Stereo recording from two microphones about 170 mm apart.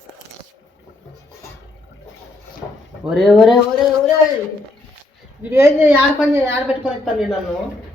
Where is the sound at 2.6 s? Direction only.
5° left (ahead or behind).